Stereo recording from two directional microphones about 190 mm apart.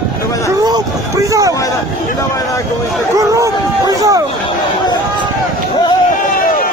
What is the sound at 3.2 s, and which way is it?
Speech, 15° right (ahead or behind).